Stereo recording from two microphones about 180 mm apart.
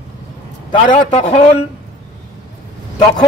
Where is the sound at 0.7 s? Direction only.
30° left (ahead or behind).